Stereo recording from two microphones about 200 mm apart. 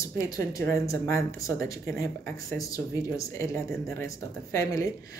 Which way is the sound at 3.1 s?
15° left (ahead or behind).